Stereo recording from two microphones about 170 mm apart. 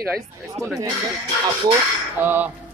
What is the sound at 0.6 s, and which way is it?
Speech, 40° right (ahead or behind).